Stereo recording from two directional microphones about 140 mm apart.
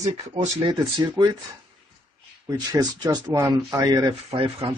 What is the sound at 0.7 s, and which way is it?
Speech, 30° right (ahead or behind).